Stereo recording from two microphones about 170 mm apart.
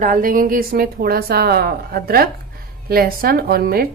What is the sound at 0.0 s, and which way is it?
Speech, 55° right (ahead or behind).